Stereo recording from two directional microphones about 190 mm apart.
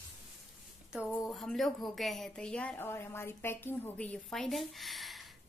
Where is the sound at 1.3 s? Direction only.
Centre (ahead or behind).